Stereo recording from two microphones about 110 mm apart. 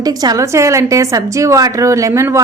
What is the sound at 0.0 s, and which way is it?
A woman's voice, 35° right (ahead or behind).